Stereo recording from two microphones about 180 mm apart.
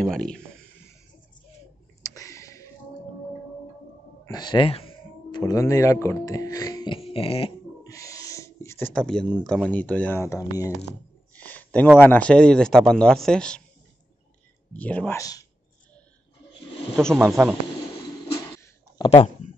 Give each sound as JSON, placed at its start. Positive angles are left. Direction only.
{"t": 0.0, "sound": "speech", "side_deg": 5}
{"t": 2.0, "sound": "a sound", "side_deg": 20}
{"t": 4.2, "sound": "speech", "side_deg": 25}
{"t": 7.8, "sound": "owl", "side_deg": 20}
{"t": 9.7, "sound": "speech", "side_deg": 10}
{"t": 11.3, "sound": "a sound", "side_deg": 10}
{"t": 12.0, "sound": "speech", "side_deg": 10}
{"t": 14.7, "sound": "speech", "side_deg": 10}
{"t": 17.3, "sound": "speech", "side_deg": -5}
{"t": 19.0, "sound": "speech", "side_deg": 35}